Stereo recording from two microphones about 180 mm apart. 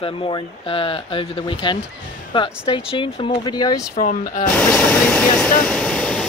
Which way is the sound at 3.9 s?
50° left (ahead or behind).